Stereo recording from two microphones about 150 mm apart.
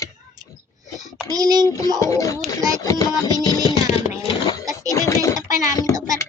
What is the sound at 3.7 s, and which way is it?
Music, 45° left (ahead or behind).